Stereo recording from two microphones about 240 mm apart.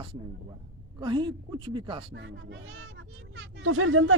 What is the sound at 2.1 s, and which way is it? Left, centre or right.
Speech, right.